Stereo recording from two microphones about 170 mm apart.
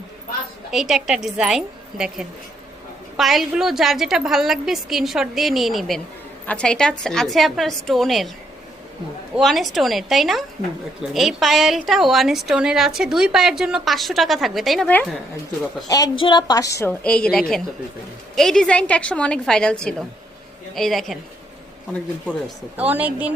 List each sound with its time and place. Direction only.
0.7 s a woman's voice: centre (ahead or behind)
9.3 s a woman's voice: centre (ahead or behind)
15.9 s a woman's voice: 25° left (ahead or behind)
17.0 s a woman's voice: 5° left (ahead or behind)
22.8 s speech: 10° right (ahead or behind)